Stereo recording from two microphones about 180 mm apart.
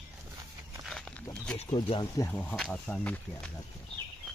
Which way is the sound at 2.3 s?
10° left (ahead or behind).